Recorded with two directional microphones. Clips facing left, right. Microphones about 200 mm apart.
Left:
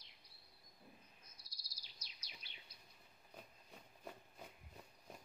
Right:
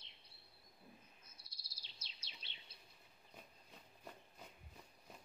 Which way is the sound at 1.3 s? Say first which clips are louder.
Even; 25° right (ahead or behind).